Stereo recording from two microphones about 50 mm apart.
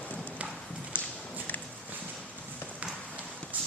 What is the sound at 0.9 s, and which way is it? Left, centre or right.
Walk, left.